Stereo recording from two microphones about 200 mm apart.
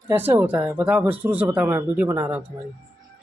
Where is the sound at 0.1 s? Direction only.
10° right (ahead or behind).